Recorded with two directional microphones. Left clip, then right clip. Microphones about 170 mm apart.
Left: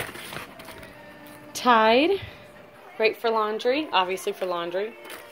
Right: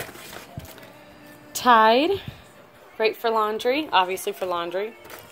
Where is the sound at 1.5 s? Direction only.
10° right (ahead or behind).